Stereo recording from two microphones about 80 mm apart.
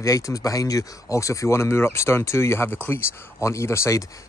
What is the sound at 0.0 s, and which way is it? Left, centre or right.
Speech, left.